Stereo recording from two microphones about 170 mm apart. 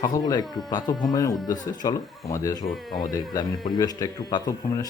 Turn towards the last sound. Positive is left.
turn(degrees=20)  # may be behind; listen again after turning